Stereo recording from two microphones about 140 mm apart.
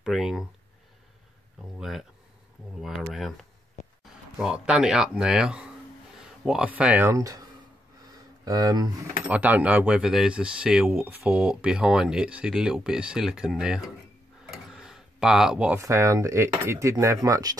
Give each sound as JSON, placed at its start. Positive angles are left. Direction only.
{"t": 0.0, "sound": "speech", "side_deg": 0}
{"t": 1.8, "sound": "speech", "side_deg": 0}
{"t": 8.5, "sound": "speech", "side_deg": -25}
{"t": 9.3, "sound": "speech", "side_deg": -10}
{"t": 14.7, "sound": "a sound", "side_deg": -5}
{"t": 15.8, "sound": "speech", "side_deg": -20}